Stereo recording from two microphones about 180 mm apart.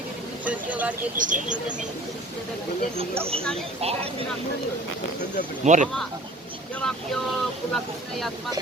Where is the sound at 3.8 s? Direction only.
35° right (ahead or behind).